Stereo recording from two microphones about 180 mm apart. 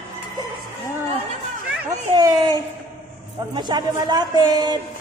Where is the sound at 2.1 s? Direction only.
25° right (ahead or behind).